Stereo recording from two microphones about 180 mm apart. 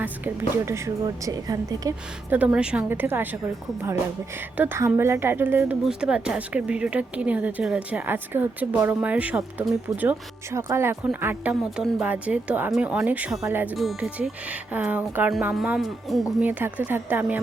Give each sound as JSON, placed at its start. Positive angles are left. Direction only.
{"t": 0.5, "sound": "speech", "side_deg": -15}
{"t": 2.3, "sound": "a woman's voice", "side_deg": -5}
{"t": 4.5, "sound": "a woman's voice", "side_deg": -10}